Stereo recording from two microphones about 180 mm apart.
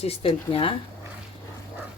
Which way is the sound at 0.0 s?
35° left (ahead or behind).